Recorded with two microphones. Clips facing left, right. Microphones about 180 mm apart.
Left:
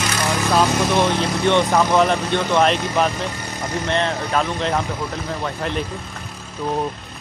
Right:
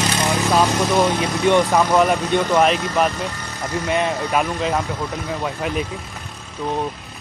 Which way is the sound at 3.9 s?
15° right (ahead or behind).